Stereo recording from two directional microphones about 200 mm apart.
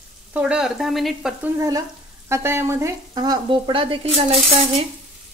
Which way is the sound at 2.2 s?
10° right (ahead or behind).